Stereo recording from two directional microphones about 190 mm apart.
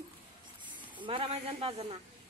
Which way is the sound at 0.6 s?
25° right (ahead or behind).